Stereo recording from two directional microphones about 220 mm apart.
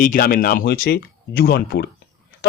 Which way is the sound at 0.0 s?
40° left (ahead or behind).